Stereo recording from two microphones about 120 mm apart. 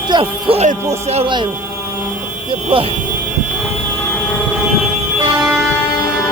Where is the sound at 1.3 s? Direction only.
40° right (ahead or behind).